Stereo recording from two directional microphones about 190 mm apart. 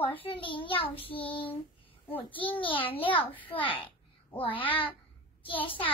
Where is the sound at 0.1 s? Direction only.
25° left (ahead or behind).